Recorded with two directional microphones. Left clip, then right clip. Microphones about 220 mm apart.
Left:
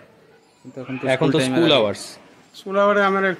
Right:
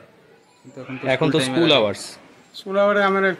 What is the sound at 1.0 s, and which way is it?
Speech, centre (ahead or behind).